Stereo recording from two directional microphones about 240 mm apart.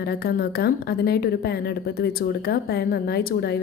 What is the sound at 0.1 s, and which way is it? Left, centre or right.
A woman's voice, left.